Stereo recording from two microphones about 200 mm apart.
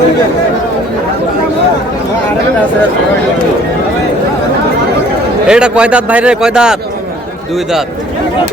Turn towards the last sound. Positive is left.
turn(degrees=-5)  # may be behind; listen again after turning